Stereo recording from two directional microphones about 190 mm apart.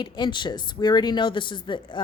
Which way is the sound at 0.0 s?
25° left (ahead or behind).